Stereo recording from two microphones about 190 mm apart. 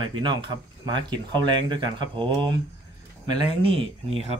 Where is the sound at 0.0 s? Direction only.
25° right (ahead or behind).